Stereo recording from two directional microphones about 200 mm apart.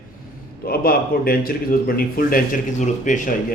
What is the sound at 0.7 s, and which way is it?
Speech, 50° left (ahead or behind).